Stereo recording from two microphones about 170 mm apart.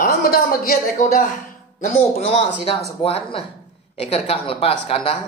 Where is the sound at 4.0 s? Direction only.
35° left (ahead or behind).